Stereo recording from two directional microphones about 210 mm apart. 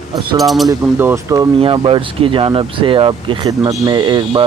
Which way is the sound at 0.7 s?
10° right (ahead or behind).